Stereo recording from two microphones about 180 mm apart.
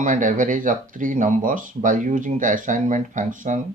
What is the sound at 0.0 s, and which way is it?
Speech, 45° right (ahead or behind).